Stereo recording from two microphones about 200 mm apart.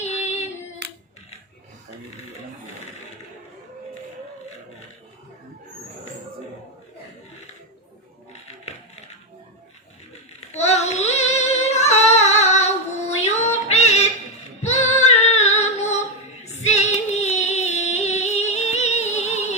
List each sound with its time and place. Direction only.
0.0 s singing: 35° left (ahead or behind)
0.8 s hands: 55° right (ahead or behind)
10.5 s female singing: 35° left (ahead or behind)